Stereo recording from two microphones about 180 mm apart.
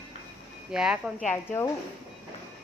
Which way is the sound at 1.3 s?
10° left (ahead or behind).